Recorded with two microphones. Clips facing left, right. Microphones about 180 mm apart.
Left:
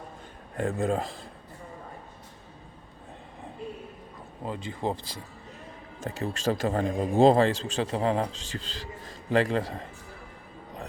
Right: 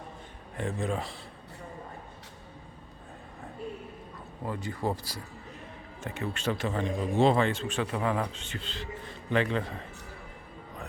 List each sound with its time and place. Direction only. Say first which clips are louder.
0.5 s speech: left 5 dB; 40° left (ahead or behind)
4.4 s speech: left 1 dB; 20° left (ahead or behind)
6.1 s speech: left 3 dB; 40° left (ahead or behind)